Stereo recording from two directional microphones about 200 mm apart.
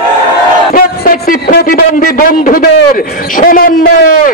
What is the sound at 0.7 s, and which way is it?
A man's voice, 45° left (ahead or behind).